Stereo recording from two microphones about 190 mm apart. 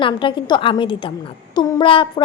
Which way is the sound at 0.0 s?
25° left (ahead or behind).